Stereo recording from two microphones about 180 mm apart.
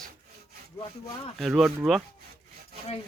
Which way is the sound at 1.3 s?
Centre (ahead or behind).